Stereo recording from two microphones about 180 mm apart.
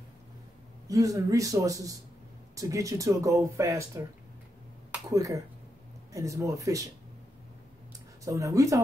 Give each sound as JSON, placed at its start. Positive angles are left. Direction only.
{"t": 0.8, "sound": "a man's voice", "side_deg": -20}
{"t": 5.1, "sound": "speech", "side_deg": -20}
{"t": 8.3, "sound": "speech", "side_deg": -15}